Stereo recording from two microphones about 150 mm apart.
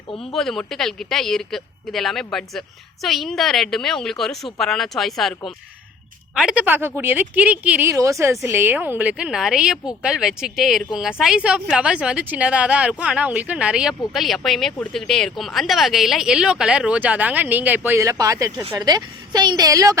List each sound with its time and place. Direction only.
0.1 s speech: 40° left (ahead or behind)
0.3 s a woman's voice: centre (ahead or behind); by 20.0 s 25° right (ahead or behind)